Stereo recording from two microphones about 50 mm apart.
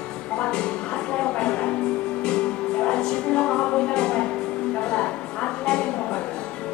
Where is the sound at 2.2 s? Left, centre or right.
Centre.